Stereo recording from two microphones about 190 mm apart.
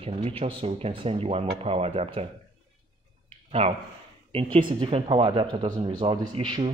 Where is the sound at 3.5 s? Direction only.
30° right (ahead or behind).